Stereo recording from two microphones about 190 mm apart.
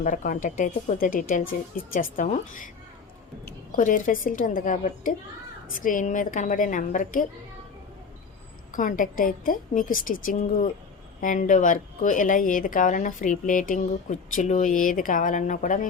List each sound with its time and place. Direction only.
0.0 s a woman's voice: 45° left (ahead or behind)
8.7 s a woman's voice: 45° left (ahead or behind)